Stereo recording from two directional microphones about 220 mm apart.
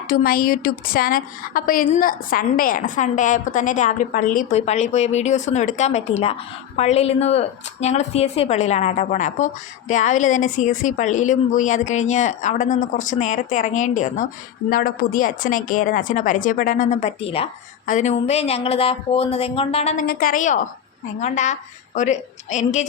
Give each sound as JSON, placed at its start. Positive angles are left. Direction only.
{"t": 0.1, "sound": "a woman's voice", "side_deg": 40}
{"t": 20.1, "sound": "a woman's voice", "side_deg": 40}